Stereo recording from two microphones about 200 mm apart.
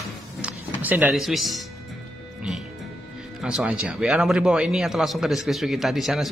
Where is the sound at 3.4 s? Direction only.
5° right (ahead or behind).